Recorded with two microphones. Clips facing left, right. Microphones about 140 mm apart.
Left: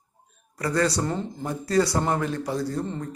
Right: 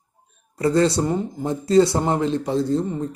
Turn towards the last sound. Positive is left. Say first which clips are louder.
# right 7 dB
turn(degrees=-20)  # may be behind; listen again after turning